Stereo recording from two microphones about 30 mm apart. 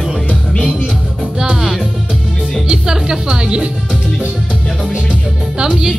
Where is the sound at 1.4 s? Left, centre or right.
Right.